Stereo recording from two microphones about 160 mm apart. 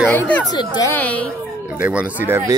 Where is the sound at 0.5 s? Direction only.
25° left (ahead or behind).